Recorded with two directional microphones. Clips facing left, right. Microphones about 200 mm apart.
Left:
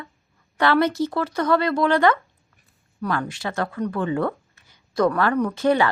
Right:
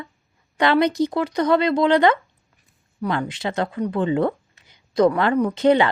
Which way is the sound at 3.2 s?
20° right (ahead or behind).